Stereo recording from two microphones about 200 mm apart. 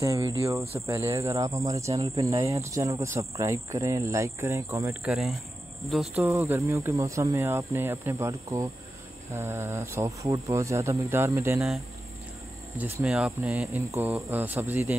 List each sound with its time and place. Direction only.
0.0 s speech: 15° right (ahead or behind)
5.0 s speech: centre (ahead or behind)
6.2 s speech: 15° right (ahead or behind)
13.0 s speech: 5° right (ahead or behind)